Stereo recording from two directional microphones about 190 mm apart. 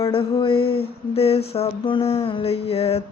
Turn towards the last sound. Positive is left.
turn(degrees=30)  # may be behind; listen again after turning